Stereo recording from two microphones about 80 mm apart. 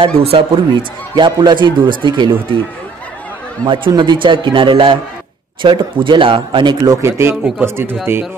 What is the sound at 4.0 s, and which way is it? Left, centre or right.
A man's voice, right.